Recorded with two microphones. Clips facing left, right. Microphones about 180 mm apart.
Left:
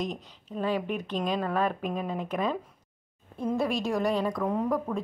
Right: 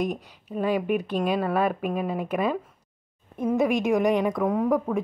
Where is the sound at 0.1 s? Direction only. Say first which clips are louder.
Right 5 dB; 10° right (ahead or behind).